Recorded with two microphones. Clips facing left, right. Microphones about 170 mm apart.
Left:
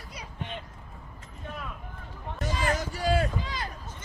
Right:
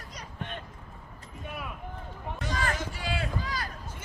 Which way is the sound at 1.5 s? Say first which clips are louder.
Even; 10° right (ahead or behind).